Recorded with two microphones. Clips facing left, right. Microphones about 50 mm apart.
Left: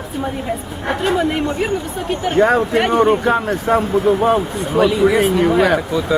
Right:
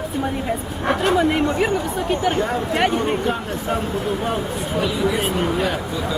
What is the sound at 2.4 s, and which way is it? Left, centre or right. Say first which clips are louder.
Speech: left 9 dB; left.